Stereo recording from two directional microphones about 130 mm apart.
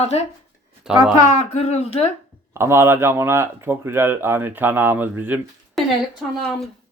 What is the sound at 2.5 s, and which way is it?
Speech, 20° right (ahead or behind).